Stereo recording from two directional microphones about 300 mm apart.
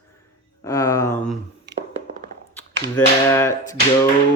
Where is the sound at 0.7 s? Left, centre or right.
Centre.